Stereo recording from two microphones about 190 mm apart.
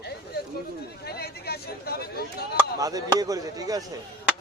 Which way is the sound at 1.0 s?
55° left (ahead or behind).